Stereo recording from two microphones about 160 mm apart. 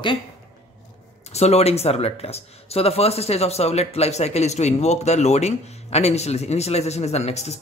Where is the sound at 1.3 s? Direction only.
40° left (ahead or behind).